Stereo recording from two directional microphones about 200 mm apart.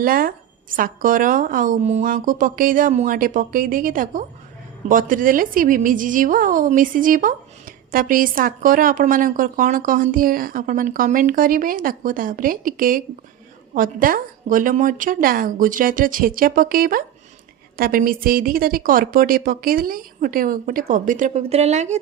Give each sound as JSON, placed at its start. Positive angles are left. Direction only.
{"t": 0.0, "sound": "a woman's voice", "side_deg": -45}